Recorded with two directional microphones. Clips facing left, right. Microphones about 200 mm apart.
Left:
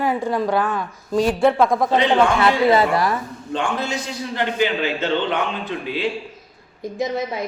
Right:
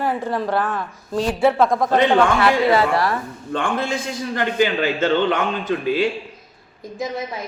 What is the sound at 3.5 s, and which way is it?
A man's voice, 55° right (ahead or behind).